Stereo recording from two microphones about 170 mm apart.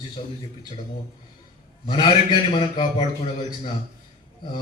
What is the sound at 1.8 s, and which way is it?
A man's voice, 25° left (ahead or behind).